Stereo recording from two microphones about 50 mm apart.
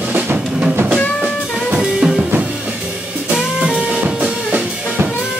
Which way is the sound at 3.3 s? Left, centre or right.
Centre.